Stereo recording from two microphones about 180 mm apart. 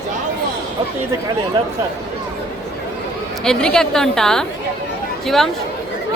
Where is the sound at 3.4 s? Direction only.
5° left (ahead or behind).